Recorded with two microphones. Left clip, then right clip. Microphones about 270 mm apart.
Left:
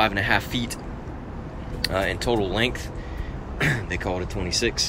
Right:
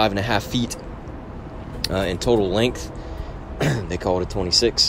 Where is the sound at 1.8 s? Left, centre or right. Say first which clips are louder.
Right 1 dB; right.